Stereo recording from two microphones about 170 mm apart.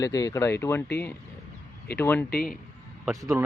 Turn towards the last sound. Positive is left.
turn(degrees=-20)  # may be behind; listen again after turning